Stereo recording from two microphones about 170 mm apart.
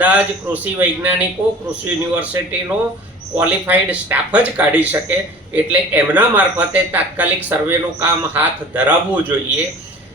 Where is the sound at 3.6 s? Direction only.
10° right (ahead or behind).